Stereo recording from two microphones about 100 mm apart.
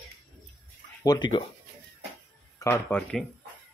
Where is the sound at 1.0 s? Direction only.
45° left (ahead or behind).